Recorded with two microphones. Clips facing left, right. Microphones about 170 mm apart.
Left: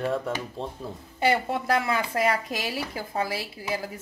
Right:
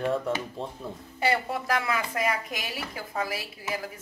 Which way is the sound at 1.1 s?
25° left (ahead or behind).